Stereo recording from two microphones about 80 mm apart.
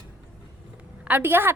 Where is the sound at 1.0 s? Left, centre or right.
Right.